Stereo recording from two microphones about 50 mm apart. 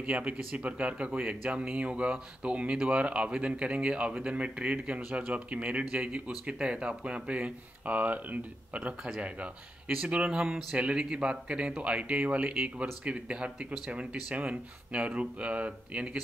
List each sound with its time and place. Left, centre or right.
0.0 s speech: right